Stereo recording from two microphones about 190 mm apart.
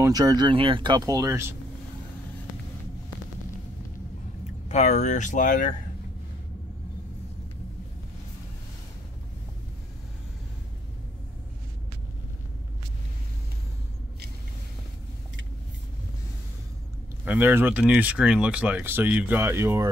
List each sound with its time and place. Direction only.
0.0 s speech: 20° right (ahead or behind)
4.6 s speech: 35° left (ahead or behind)
17.2 s speech: 5° right (ahead or behind)